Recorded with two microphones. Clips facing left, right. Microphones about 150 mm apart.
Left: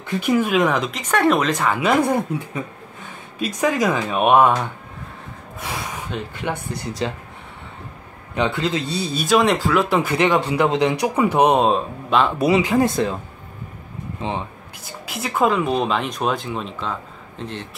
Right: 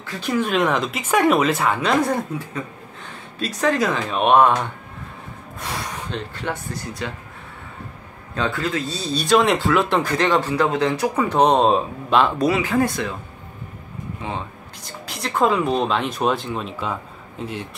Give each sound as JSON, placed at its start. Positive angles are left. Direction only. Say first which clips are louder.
{"t": 0.0, "sound": "speech", "louder": "left 7 dB", "side_deg": 20}
{"t": 0.4, "sound": "speech", "louder": "right 2 dB", "side_deg": 5}
{"t": 1.8, "sound": "speech", "louder": "left 2 dB", "side_deg": 5}
{"t": 3.3, "sound": "speech", "louder": "even", "side_deg": 10}
{"t": 5.6, "sound": "speech", "louder": "even", "side_deg": 10}
{"t": 7.0, "sound": "speech", "louder": "left 6 dB", "side_deg": 25}
{"t": 8.4, "sound": "speech", "louder": "left 2 dB", "side_deg": 20}
{"t": 9.0, "sound": "speech", "louder": "even", "side_deg": 5}
{"t": 12.4, "sound": "speech", "louder": "left 2 dB", "side_deg": 15}
{"t": 14.2, "sound": "speech", "louder": "left 4 dB", "side_deg": 30}
{"t": 14.9, "sound": "speech", "louder": "left 1 dB", "side_deg": 5}